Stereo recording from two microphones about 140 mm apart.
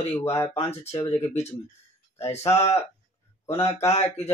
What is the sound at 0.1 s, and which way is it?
Speech, 20° left (ahead or behind).